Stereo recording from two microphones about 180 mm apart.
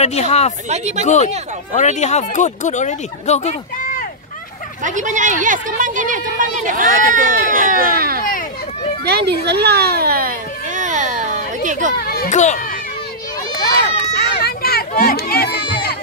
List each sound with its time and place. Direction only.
0.0 s speech: 35° left (ahead or behind)
0.7 s speech: 40° right (ahead or behind)
1.0 s speech: 40° left (ahead or behind)
4.8 s a woman's voice: 45° right (ahead or behind)
8.2 s a sound: 50° left (ahead or behind)
9.0 s a sound: 65° right (ahead or behind); by 11.9 s 45° right (ahead or behind)
12.0 s children playing: 60° left (ahead or behind)
12.3 s a child's voice: 40° left (ahead or behind)
14.1 s a sound: 60° left (ahead or behind)